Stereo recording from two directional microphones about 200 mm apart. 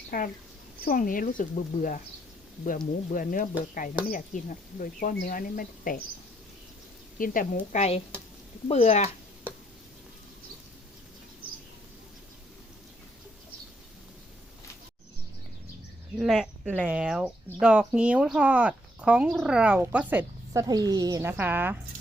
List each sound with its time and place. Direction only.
0.1 s speech: 45° left (ahead or behind)
7.2 s speech: 40° left (ahead or behind)
16.1 s speech: centre (ahead or behind)